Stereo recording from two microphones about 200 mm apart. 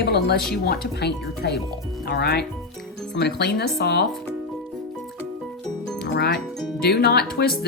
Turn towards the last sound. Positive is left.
turn(degrees=50)  # may be behind; listen again after turning